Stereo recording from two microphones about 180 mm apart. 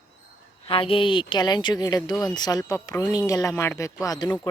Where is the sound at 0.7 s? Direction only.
30° left (ahead or behind).